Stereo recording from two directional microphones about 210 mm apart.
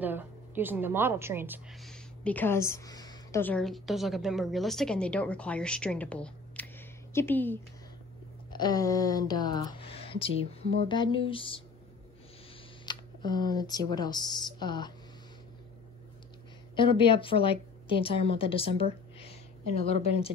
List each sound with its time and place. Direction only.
0.0 s a woman's voice: 10° right (ahead or behind); by 7.5 s 10° left (ahead or behind)
8.5 s a woman's voice: 20° left (ahead or behind)
12.8 s speech: 20° left (ahead or behind)
16.7 s a woman's voice: 25° left (ahead or behind)
19.1 s a sound: 25° left (ahead or behind)